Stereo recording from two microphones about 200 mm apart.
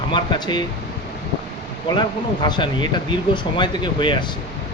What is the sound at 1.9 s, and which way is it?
Speech, 20° left (ahead or behind).